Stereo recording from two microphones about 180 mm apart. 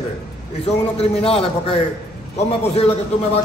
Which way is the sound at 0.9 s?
35° left (ahead or behind).